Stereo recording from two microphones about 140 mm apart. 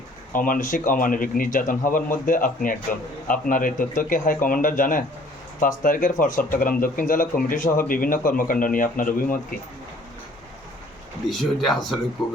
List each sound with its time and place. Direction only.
0.3 s a man's voice: 75° left (ahead or behind)
11.3 s speech: centre (ahead or behind)